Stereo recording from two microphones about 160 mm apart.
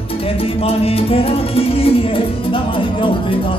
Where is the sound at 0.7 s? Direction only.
35° left (ahead or behind).